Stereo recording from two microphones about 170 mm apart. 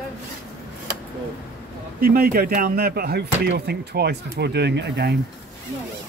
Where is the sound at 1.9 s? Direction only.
65° right (ahead or behind); by 5.1 s 85° right.